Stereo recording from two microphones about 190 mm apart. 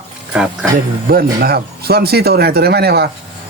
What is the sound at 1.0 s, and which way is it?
Speech, 55° right (ahead or behind).